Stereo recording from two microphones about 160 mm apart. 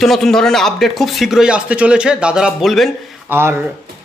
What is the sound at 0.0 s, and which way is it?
Speech, centre (ahead or behind).